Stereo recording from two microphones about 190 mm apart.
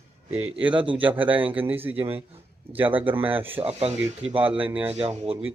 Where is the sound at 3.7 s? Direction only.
30° right (ahead or behind).